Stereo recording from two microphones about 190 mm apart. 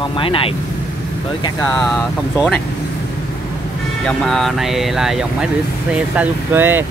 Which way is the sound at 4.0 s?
5° left (ahead or behind).